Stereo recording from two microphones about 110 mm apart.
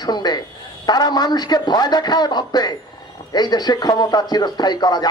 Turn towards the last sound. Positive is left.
turn(degrees=40)  # may be behind; listen again after turning